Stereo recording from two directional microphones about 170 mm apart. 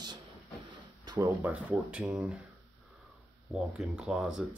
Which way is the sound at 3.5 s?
5° right (ahead or behind).